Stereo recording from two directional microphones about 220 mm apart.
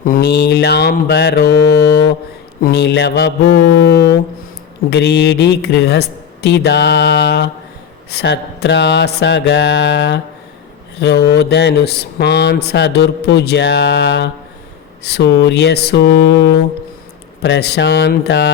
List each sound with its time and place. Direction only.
0.0 s speech: 40° left (ahead or behind)